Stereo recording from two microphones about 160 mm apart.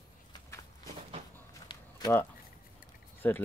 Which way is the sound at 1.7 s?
25° left (ahead or behind).